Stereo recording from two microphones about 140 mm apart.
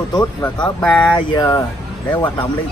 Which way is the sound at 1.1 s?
30° left (ahead or behind).